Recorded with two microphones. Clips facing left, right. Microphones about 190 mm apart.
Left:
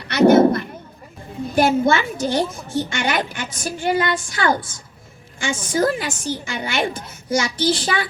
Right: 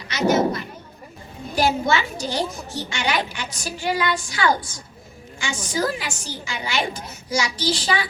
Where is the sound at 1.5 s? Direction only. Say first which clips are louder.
Left 4 dB; 50° left (ahead or behind).